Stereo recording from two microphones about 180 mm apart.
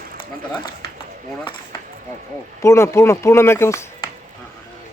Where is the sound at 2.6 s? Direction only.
15° left (ahead or behind).